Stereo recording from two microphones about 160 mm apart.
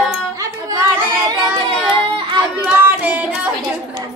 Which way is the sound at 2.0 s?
30° right (ahead or behind).